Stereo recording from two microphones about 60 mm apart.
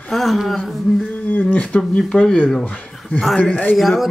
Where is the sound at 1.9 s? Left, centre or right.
Centre.